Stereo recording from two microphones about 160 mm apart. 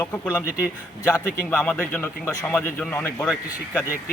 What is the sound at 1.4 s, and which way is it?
Speech, 10° left (ahead or behind).